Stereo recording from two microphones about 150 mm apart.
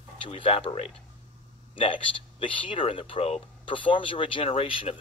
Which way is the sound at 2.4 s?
35° left (ahead or behind).